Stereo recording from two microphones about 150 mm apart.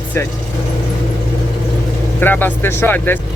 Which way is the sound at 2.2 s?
10° left (ahead or behind).